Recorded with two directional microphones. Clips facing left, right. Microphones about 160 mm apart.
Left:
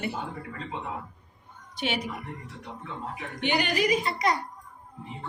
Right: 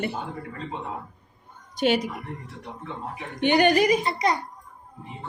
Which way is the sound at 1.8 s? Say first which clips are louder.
Right 8 dB; 45° right (ahead or behind).